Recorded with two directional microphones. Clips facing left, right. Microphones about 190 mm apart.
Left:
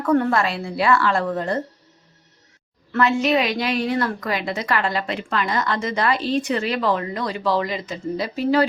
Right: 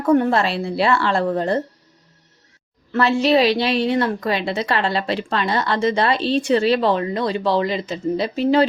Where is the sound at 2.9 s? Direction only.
30° right (ahead or behind).